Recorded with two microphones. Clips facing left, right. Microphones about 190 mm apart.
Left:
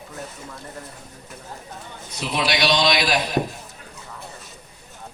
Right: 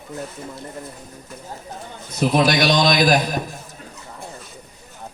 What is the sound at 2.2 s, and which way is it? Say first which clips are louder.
A man's voice: right 6 dB; 45° right (ahead or behind).